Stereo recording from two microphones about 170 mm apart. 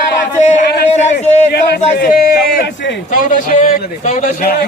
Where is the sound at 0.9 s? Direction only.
40° left (ahead or behind).